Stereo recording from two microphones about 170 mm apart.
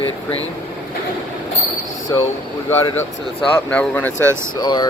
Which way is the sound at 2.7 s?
15° left (ahead or behind).